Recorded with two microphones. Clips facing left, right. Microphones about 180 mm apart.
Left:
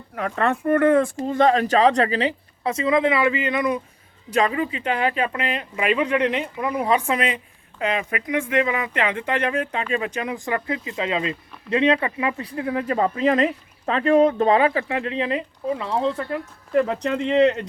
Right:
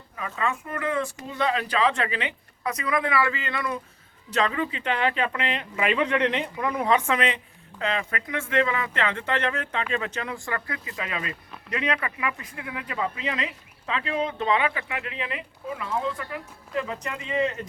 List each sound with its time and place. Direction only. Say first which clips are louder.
0.2 s speech: left 7 dB; 65° left (ahead or behind)
1.3 s speech: left 8 dB; 45° left (ahead or behind); by 4.7 s 10° left (ahead or behind)
4.7 s speech: left 3 dB; 45° left (ahead or behind)
5.9 s speech: left 4 dB; 10° left (ahead or behind)
6.9 s speech: left 1 dB; 35° left (ahead or behind)
7.8 s speech: left 4 dB; 15° left (ahead or behind); by 16.2 s 30° left (ahead or behind)
16.7 s speech: left 10 dB; 60° left (ahead or behind)